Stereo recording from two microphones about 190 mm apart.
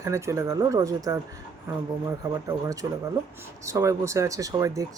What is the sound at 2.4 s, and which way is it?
Speech, 20° right (ahead or behind).